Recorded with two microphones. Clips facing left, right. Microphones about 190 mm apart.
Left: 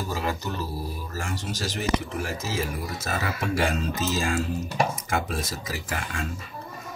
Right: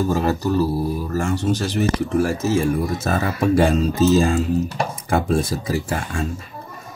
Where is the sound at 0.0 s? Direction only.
45° right (ahead or behind).